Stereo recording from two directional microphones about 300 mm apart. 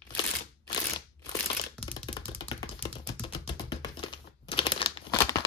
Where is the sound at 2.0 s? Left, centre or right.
Centre.